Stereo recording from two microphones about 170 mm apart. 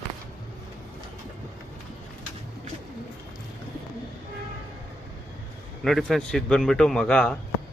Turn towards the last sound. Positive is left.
turn(degrees=5)  # may be behind; listen again after turning